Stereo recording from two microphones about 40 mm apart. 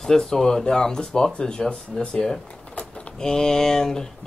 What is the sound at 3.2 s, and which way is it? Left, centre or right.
Speech, centre.